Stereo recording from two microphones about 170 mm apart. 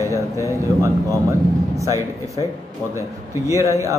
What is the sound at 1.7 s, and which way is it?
Speech, 20° right (ahead or behind).